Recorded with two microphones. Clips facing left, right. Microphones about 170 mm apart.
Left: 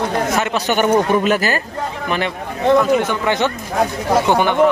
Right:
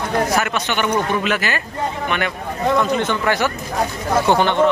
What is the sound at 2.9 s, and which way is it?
Speech, 10° left (ahead or behind).